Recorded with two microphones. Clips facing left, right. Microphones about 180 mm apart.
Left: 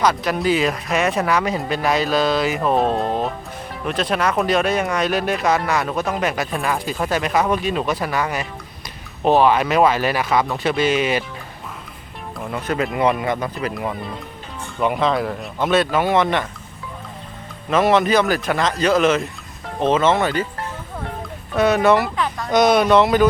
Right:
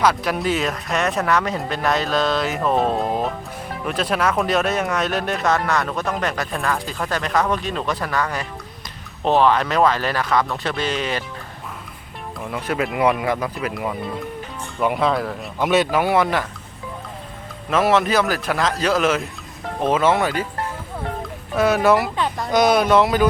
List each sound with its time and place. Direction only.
0.0 s speech: centre (ahead or behind); by 11.2 s 15° left (ahead or behind)
12.5 s speech: 5° right (ahead or behind)
15.5 s speech: 10° right (ahead or behind)
17.7 s speech: centre (ahead or behind)
21.5 s speech: 5° right (ahead or behind)
22.1 s a sound: 30° right (ahead or behind)
22.5 s speech: 5° right (ahead or behind)